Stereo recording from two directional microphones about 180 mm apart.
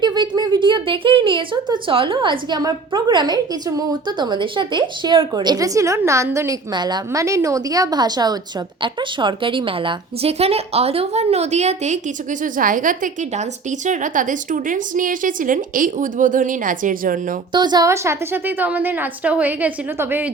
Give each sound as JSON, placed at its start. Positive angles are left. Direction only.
{"t": 0.0, "sound": "a woman's voice", "side_deg": -25}
{"t": 17.5, "sound": "a woman's voice", "side_deg": -25}